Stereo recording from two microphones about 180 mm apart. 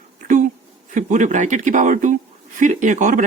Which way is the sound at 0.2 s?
45° right (ahead or behind).